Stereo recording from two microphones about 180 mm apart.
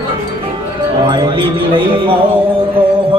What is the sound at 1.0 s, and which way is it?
A man's voice, 25° right (ahead or behind).